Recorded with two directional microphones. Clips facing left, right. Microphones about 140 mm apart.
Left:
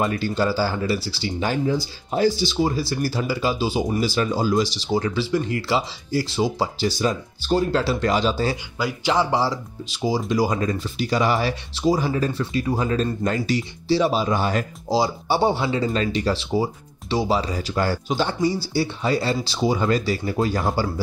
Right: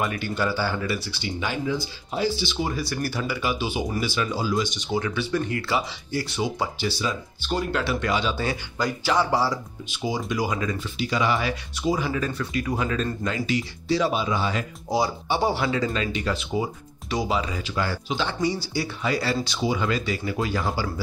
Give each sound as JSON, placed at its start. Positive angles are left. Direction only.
{"t": 0.0, "sound": "speech", "side_deg": 35}
{"t": 4.7, "sound": "speech", "side_deg": 35}
{"t": 9.0, "sound": "speech", "side_deg": 20}
{"t": 9.8, "sound": "speech", "side_deg": 35}
{"t": 13.2, "sound": "speech", "side_deg": 45}
{"t": 13.8, "sound": "speech", "side_deg": 30}
{"t": 14.2, "sound": "speech", "side_deg": 45}
{"t": 14.9, "sound": "speech", "side_deg": 30}
{"t": 15.9, "sound": "speech", "side_deg": 35}